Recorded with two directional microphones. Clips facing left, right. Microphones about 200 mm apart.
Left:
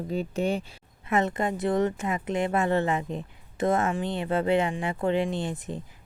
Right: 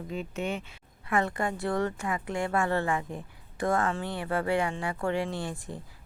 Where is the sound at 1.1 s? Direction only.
20° left (ahead or behind).